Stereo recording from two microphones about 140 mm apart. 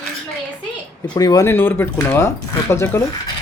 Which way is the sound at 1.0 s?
30° left (ahead or behind).